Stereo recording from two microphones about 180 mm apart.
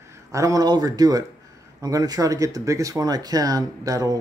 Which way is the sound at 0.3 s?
20° right (ahead or behind).